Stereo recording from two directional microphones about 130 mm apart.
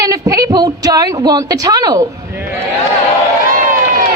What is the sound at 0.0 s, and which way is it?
A woman's voice, 25° right (ahead or behind).